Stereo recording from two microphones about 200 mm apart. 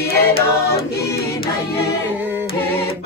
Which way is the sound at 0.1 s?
50° left (ahead or behind).